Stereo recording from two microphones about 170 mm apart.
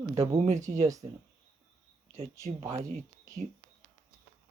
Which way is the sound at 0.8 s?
20° right (ahead or behind).